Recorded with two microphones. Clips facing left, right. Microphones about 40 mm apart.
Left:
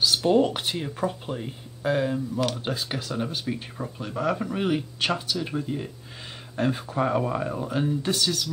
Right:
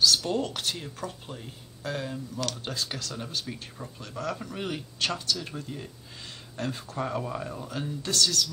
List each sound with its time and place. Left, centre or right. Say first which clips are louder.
0.0 s speech: left 5 dB; left